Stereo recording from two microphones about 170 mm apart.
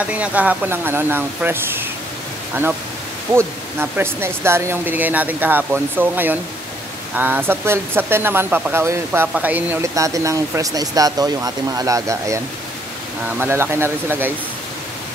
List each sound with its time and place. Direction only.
0.0 s speech: 10° right (ahead or behind)
3.3 s speech: 15° right (ahead or behind)
13.4 s speech: 15° right (ahead or behind)